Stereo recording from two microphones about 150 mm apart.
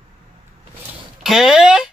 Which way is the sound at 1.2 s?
5° right (ahead or behind).